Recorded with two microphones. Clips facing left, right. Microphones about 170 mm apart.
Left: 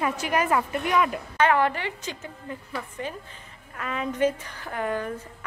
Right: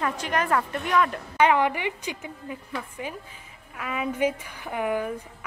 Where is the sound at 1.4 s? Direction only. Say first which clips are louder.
Right 1 dB; 15° right (ahead or behind).